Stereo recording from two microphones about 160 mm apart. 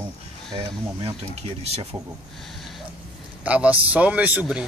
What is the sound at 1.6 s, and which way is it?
Speech, 40° right (ahead or behind).